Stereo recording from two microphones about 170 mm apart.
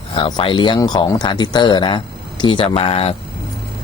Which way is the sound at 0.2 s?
30° left (ahead or behind).